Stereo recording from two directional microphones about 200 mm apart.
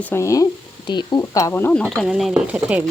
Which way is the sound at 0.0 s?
10° left (ahead or behind).